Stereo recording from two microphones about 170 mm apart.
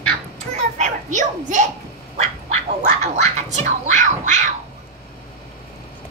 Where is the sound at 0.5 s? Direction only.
45° right (ahead or behind).